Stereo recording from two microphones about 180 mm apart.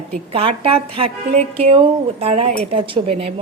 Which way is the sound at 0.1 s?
30° right (ahead or behind).